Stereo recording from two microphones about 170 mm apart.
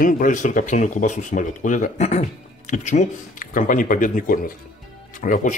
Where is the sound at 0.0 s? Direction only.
50° left (ahead or behind).